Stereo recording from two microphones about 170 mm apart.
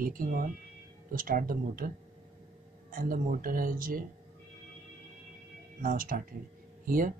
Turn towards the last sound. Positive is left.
turn(degrees=-55)  # may be behind; listen again after turning